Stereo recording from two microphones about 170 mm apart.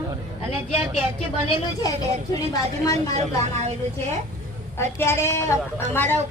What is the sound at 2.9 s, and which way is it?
Speech, 40° right (ahead or behind).